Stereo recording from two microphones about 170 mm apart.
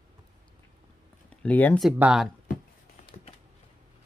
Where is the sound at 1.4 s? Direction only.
10° left (ahead or behind).